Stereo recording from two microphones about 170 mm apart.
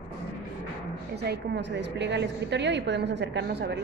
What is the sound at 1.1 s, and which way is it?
A woman's voice, 75° right (ahead or behind).